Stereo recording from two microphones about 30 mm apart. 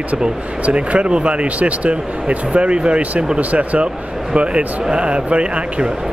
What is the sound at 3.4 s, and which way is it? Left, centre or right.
Speech, right.